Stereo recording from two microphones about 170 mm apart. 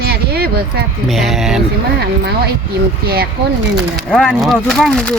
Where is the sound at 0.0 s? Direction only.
65° right (ahead or behind).